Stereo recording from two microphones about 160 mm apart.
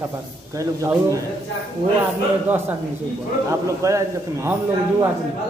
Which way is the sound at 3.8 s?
20° right (ahead or behind).